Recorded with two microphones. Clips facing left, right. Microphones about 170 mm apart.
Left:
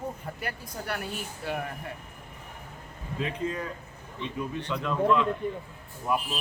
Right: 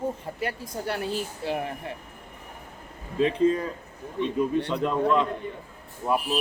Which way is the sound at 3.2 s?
30° right (ahead or behind).